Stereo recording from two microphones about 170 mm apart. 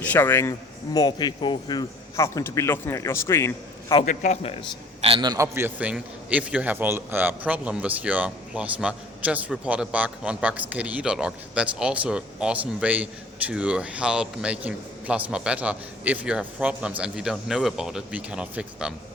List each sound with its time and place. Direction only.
0.0 s a man's voice: 10° left (ahead or behind)
0.9 s a man's voice: 25° left (ahead or behind)
4.0 s a man's voice: 50° left (ahead or behind)
4.9 s a man's voice: 35° right (ahead or behind); by 18.9 s 5° right (ahead or behind)